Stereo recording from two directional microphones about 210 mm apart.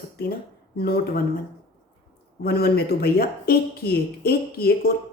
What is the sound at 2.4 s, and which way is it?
Speech, 45° left (ahead or behind).